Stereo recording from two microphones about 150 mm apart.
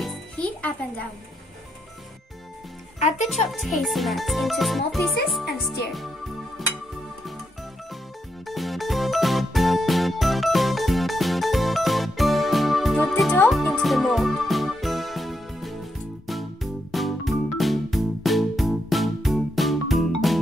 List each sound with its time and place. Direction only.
0.0 s jingle: 5° left (ahead or behind)
3.0 s a child's voice: 50° left (ahead or behind)
3.4 s speech: centre (ahead or behind)
8.5 s music: centre (ahead or behind)